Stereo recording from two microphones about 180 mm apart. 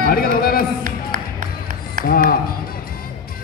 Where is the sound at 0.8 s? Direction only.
50° right (ahead or behind).